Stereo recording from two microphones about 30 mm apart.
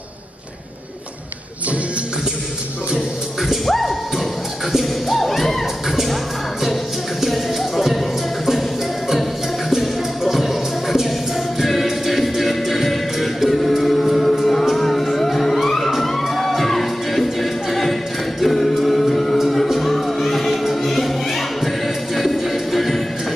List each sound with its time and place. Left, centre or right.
3.6 s music: centre
7.2 s music: centre
9.7 s music: centre